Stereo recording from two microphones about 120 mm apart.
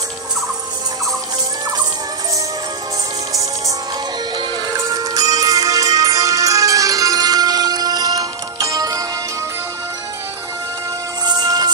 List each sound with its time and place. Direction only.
4.4 s music: 35° right (ahead or behind)
11.2 s music: 35° right (ahead or behind)